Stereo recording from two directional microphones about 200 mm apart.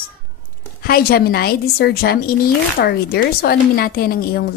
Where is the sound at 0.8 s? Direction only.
50° left (ahead or behind).